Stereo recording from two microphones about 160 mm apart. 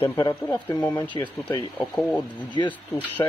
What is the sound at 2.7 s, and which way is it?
Speech, 10° left (ahead or behind).